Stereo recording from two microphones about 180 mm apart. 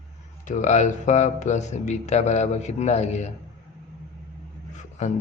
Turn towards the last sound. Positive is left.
turn(degrees=40)  # may be behind; listen again after turning